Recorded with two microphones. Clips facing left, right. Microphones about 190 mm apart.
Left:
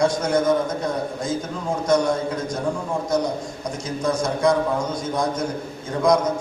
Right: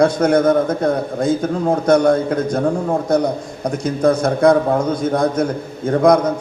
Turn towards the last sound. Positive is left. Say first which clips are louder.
# right 6 dB
turn(degrees=-60)  # may be behind; listen again after turning